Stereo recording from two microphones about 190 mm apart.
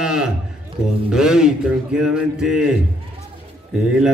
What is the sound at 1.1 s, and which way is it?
A man's voice, 5° right (ahead or behind).